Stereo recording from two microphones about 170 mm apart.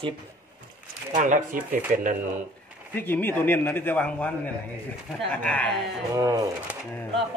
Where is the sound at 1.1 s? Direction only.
50° right (ahead or behind).